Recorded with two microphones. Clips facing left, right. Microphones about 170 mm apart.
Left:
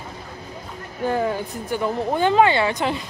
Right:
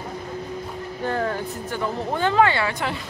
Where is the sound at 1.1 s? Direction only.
15° left (ahead or behind).